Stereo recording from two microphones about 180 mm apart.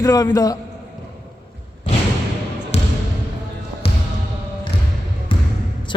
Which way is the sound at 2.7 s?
35° left (ahead or behind).